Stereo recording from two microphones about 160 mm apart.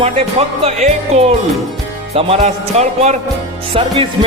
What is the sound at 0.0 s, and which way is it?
A man's voice, 35° right (ahead or behind).